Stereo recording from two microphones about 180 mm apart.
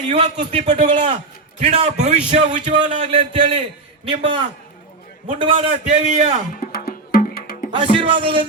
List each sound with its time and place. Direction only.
0.1 s a man's voice: 35° right (ahead or behind)
2.5 s a man's voice: 25° right (ahead or behind)
6.7 s music: 55° left (ahead or behind)
7.7 s speech: 30° right (ahead or behind)